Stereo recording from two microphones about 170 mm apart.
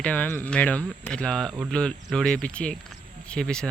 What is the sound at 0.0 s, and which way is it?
Speech, 10° left (ahead or behind).